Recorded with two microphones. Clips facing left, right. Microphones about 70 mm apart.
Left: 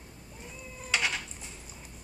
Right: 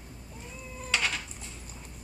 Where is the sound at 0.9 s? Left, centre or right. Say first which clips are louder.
Even; centre.